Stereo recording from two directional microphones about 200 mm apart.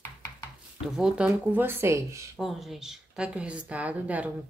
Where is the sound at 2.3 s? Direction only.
Centre (ahead or behind).